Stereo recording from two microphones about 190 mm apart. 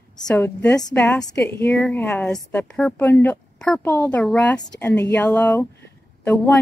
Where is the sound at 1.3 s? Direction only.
5° left (ahead or behind).